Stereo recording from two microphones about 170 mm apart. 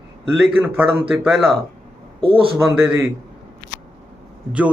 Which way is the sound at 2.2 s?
30° right (ahead or behind).